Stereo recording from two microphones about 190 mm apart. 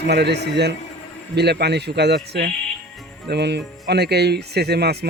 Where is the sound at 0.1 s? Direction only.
60° right (ahead or behind).